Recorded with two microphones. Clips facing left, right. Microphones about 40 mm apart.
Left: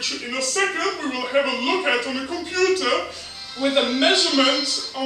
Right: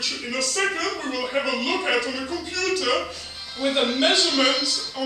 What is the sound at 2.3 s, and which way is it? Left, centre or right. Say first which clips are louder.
A man's voice: left 5 dB; left.